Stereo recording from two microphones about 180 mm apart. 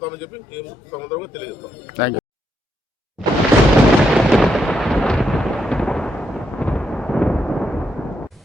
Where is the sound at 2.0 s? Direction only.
70° left (ahead or behind).